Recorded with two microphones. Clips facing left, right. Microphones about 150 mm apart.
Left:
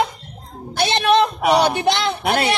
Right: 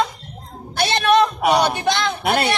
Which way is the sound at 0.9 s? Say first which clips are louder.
Even; 25° left (ahead or behind).